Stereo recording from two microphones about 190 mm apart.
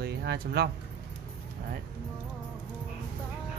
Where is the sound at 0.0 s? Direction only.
60° right (ahead or behind).